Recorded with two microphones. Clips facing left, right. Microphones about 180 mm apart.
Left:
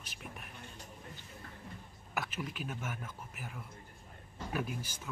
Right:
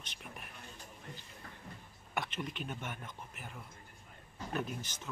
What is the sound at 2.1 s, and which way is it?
Speech, 5° left (ahead or behind).